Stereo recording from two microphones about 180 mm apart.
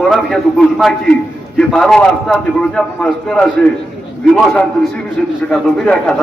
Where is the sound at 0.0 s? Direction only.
Centre (ahead or behind).